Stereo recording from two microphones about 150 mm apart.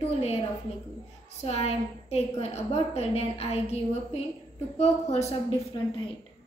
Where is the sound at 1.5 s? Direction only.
45° left (ahead or behind).